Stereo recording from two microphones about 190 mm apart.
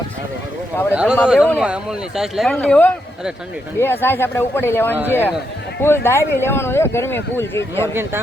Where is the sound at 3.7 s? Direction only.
10° left (ahead or behind).